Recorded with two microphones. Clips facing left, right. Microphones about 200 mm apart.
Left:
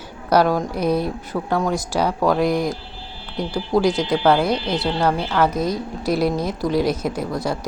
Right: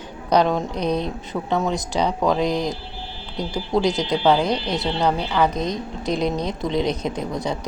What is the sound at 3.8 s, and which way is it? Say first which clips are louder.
Speech: left 1 dB; 20° right (ahead or behind).